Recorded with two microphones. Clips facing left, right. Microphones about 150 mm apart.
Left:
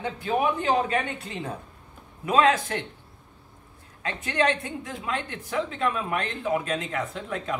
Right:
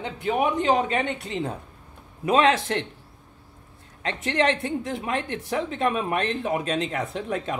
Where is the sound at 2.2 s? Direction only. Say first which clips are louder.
Right 1 dB; 25° right (ahead or behind).